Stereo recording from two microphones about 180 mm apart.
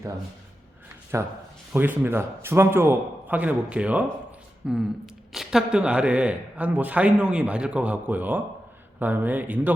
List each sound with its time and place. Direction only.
1.1 s speech: 15° right (ahead or behind)